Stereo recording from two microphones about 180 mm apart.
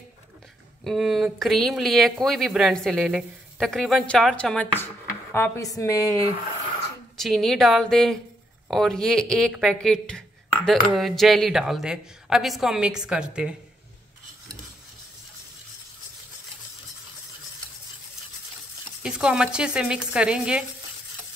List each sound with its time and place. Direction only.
0.8 s a woman's voice: centre (ahead or behind); by 6.2 s 15° left (ahead or behind)
7.2 s speech: centre (ahead or behind)
19.0 s speech: 5° right (ahead or behind)